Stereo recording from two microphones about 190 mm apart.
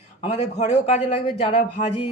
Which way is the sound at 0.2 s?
30° left (ahead or behind).